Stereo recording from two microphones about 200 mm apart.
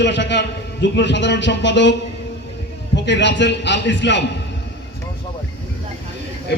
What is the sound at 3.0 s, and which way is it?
A man's voice, 60° left (ahead or behind).